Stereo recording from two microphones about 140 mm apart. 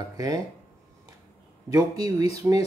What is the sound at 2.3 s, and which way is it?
Speech, 20° right (ahead or behind).